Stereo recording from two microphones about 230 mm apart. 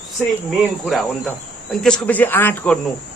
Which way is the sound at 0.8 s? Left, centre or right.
Centre.